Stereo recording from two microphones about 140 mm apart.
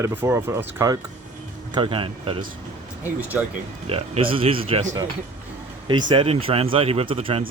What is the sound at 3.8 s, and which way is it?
Speech, 45° right (ahead or behind).